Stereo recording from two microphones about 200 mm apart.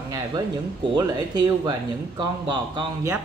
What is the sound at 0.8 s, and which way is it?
Speech, 20° right (ahead or behind).